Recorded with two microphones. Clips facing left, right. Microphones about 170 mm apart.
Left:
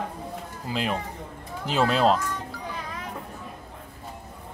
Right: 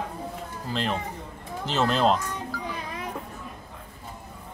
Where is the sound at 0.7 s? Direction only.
10° left (ahead or behind).